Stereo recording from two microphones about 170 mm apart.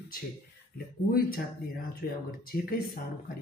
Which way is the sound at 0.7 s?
60° left (ahead or behind).